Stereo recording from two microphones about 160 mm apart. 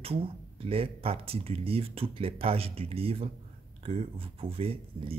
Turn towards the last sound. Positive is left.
turn(degrees=-35)  # may be behind; listen again after turning